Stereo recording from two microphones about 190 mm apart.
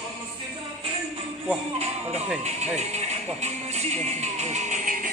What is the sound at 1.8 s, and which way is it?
Speech, 35° right (ahead or behind).